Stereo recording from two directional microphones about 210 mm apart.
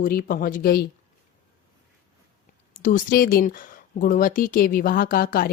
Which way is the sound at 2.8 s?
40° left (ahead or behind).